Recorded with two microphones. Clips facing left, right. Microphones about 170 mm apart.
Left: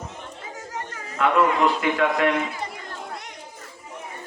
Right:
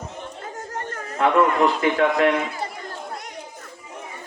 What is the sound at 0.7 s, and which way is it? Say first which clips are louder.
Chatter: right 3 dB; 55° right (ahead or behind).